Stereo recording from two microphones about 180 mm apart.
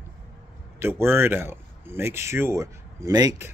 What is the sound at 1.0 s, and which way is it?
Speech, 10° right (ahead or behind).